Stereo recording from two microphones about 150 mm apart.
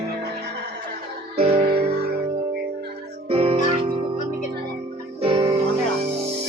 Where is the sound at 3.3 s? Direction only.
40° right (ahead or behind).